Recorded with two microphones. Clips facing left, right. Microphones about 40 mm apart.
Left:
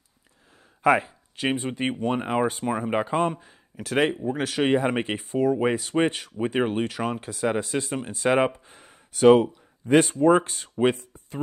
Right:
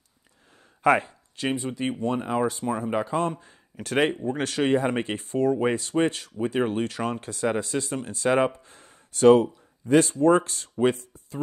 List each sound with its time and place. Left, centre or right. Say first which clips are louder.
0.8 s speech: even; centre
1.3 s speech: left 2 dB; centre
1.6 s speech: left 1 dB; left; by 3.5 s centre
3.7 s speech: even; centre
4.6 s speech: left 1 dB; centre
9.8 s speech: left 1 dB; left